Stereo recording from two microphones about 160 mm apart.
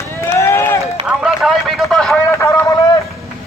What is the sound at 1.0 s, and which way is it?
A man's voice, centre (ahead or behind).